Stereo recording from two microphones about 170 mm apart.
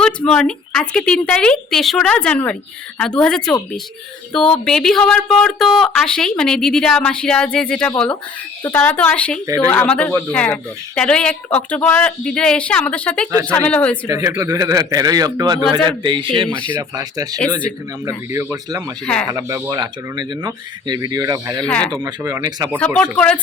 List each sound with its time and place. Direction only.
0.0 s speech: 5° left (ahead or behind)
4.5 s speech: 5° left (ahead or behind)
14.1 s speech: 20° right (ahead or behind)
16.5 s speech: 5° left (ahead or behind)
16.7 s speech: 20° right (ahead or behind)
21.6 s speech: 5° left (ahead or behind)
21.9 s speech: 20° right (ahead or behind)
23.1 s speech: 5° left (ahead or behind)